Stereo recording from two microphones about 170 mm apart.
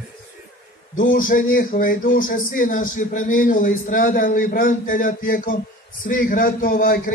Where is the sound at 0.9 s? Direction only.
55° left (ahead or behind).